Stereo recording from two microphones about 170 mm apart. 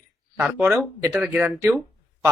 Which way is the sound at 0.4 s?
Centre (ahead or behind).